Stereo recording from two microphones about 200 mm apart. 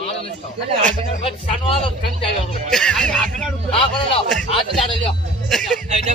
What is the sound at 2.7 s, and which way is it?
Speech, 5° left (ahead or behind).